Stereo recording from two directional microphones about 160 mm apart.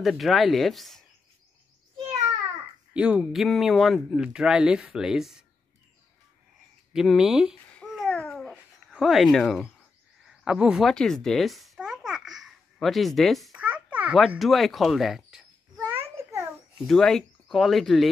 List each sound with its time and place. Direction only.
0.0 s speech: centre (ahead or behind)
2.9 s speech: 5° right (ahead or behind)
6.9 s speech: 5° right (ahead or behind)
7.7 s babbling: centre (ahead or behind)
10.2 s a sound: 5° right (ahead or behind)
16.7 s speech: centre (ahead or behind)